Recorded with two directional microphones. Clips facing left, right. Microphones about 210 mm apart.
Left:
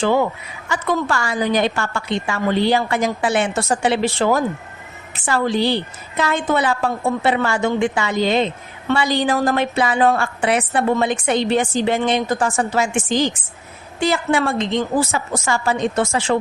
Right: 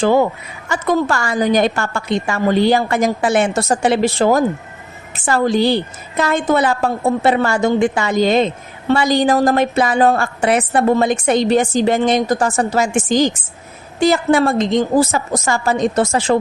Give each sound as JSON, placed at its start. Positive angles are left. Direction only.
{"t": 0.0, "sound": "a woman's voice", "side_deg": -40}